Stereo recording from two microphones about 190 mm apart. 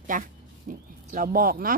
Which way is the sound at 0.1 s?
45° right (ahead or behind).